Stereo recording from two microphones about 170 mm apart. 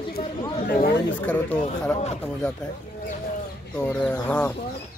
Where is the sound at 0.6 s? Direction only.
65° left (ahead or behind).